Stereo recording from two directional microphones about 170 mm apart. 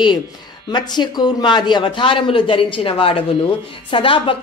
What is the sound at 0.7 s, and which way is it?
A woman's voice, 25° left (ahead or behind).